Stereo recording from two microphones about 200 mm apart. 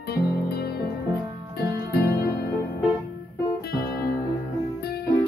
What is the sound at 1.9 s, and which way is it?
Music, 50° left (ahead or behind).